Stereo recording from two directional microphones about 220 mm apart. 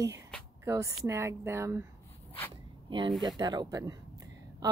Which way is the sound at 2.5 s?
20° right (ahead or behind).